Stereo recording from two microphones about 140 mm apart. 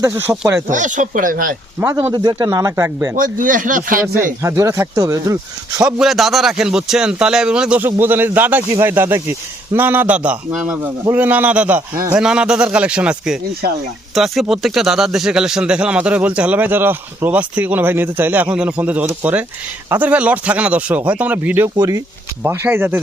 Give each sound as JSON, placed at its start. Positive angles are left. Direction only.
{"t": 0.0, "sound": "speech", "side_deg": -15}
{"t": 0.7, "sound": "speech", "side_deg": -65}
{"t": 1.8, "sound": "speech", "side_deg": -15}
{"t": 2.1, "sound": "speech", "side_deg": -30}
{"t": 3.2, "sound": "speech", "side_deg": -70}
{"t": 4.0, "sound": "speech", "side_deg": -15}
{"t": 5.8, "sound": "speech", "side_deg": 0}